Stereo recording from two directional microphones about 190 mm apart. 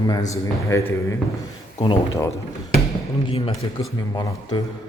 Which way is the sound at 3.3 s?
30° left (ahead or behind).